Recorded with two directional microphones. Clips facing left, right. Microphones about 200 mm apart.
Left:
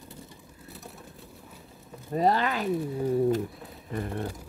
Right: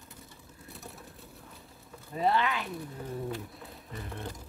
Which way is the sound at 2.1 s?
40° left (ahead or behind).